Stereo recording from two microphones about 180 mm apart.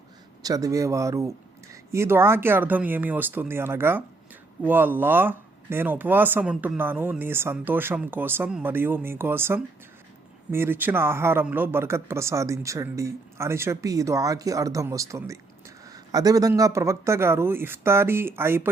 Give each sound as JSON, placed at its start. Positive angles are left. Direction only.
{"t": 0.4, "sound": "speech", "side_deg": -20}